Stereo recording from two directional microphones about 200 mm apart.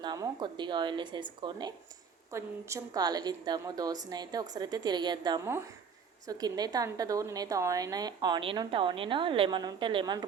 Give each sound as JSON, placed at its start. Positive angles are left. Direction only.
{"t": 0.0, "sound": "a woman's voice", "side_deg": -20}